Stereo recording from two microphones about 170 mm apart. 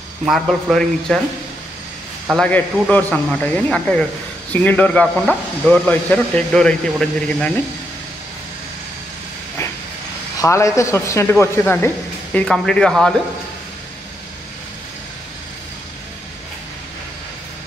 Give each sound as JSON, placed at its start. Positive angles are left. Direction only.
{"t": 0.2, "sound": "speech", "side_deg": 0}
{"t": 2.3, "sound": "speech", "side_deg": 10}
{"t": 10.4, "sound": "speech", "side_deg": 20}
{"t": 12.4, "sound": "speech", "side_deg": 5}